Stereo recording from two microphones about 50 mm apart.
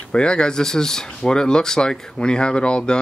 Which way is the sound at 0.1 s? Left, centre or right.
Centre.